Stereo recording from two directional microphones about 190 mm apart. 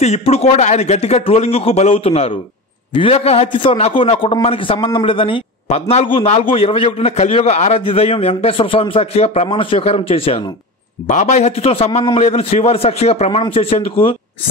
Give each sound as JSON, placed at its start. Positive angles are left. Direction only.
{"t": 0.0, "sound": "a man's voice", "side_deg": 35}
{"t": 11.1, "sound": "a man's voice", "side_deg": 40}